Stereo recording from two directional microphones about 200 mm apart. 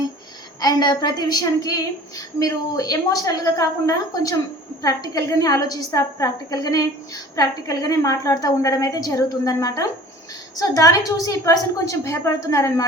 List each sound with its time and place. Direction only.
0.6 s a woman's voice: 20° left (ahead or behind)